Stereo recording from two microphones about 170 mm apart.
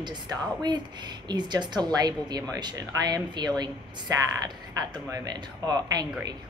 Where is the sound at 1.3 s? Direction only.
25° right (ahead or behind).